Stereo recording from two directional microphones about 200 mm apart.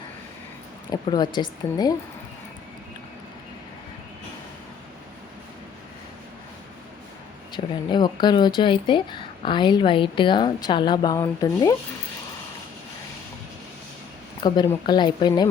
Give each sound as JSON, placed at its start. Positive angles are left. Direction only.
{"t": 0.9, "sound": "speech", "side_deg": 20}
{"t": 7.5, "sound": "speech", "side_deg": 20}
{"t": 14.4, "sound": "speech", "side_deg": 20}